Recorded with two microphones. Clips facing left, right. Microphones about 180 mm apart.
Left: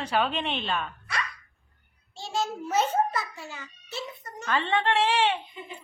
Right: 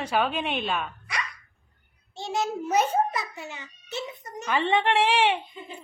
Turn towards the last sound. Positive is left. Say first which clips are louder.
# right 2 dB
turn(degrees=-15)  # may be behind; listen again after turning